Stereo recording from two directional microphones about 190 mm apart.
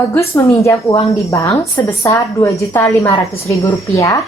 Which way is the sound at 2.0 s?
15° left (ahead or behind).